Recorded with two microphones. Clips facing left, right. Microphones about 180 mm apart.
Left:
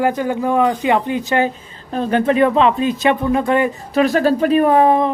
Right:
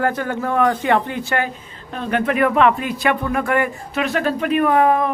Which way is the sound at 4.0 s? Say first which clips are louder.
Left 6 dB; 35° left (ahead or behind).